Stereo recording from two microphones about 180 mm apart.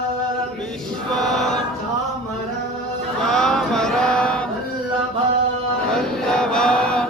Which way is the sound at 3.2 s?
5° left (ahead or behind).